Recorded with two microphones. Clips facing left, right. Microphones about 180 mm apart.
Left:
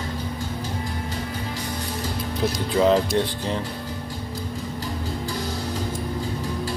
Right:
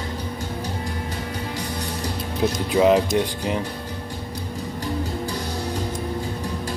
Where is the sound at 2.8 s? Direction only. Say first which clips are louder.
Right 2 dB; 15° right (ahead or behind).